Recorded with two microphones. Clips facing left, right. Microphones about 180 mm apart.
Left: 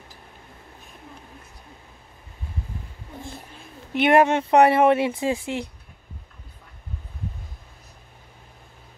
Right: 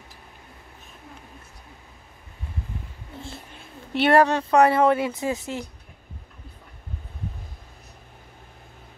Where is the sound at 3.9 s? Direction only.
15° left (ahead or behind).